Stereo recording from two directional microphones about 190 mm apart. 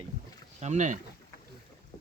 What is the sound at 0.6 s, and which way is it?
Speech, 40° right (ahead or behind).